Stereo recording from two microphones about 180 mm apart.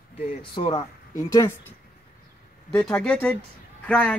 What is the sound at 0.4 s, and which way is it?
Speech, 30° left (ahead or behind).